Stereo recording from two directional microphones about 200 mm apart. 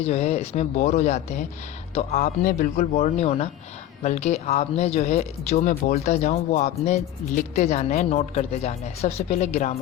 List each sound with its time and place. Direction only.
0.0 s speech: 30° left (ahead or behind)